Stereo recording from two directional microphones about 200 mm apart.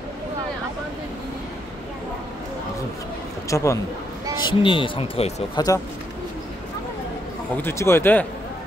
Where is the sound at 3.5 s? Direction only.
15° left (ahead or behind).